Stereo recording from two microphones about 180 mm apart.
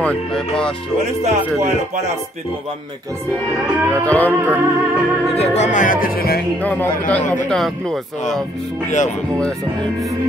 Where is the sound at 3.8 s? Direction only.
15° right (ahead or behind).